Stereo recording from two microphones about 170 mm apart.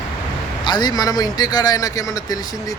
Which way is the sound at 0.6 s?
25° left (ahead or behind).